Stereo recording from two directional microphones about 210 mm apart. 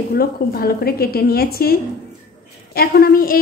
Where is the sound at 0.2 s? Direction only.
45° left (ahead or behind).